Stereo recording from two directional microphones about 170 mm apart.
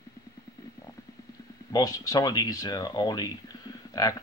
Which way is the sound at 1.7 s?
20° left (ahead or behind).